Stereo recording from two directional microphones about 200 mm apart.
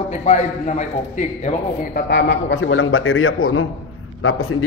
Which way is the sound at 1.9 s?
60° left (ahead or behind).